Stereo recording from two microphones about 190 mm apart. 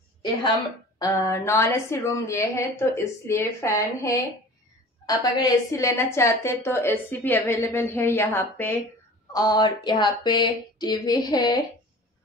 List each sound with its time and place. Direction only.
0.9 s a woman's voice: 15° left (ahead or behind)